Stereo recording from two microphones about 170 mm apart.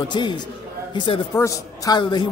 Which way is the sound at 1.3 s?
20° left (ahead or behind).